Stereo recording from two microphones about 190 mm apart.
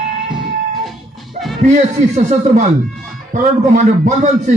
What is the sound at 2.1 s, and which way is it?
A man's voice, 40° right (ahead or behind).